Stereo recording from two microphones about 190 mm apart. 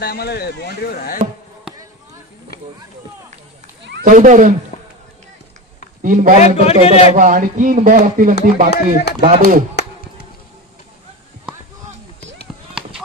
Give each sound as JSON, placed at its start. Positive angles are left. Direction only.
{"t": 0.0, "sound": "speech", "side_deg": 55}
{"t": 4.0, "sound": "speech", "side_deg": -45}
{"t": 6.0, "sound": "speech", "side_deg": -45}
{"t": 6.4, "sound": "a man's voice", "side_deg": 35}
{"t": 7.2, "sound": "speech", "side_deg": -45}
{"t": 8.6, "sound": "speech", "side_deg": 60}
{"t": 9.2, "sound": "speech", "side_deg": -45}